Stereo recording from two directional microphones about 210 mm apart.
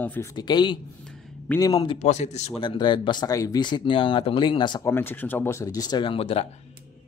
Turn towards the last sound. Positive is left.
turn(degrees=25)  # may be behind; listen again after turning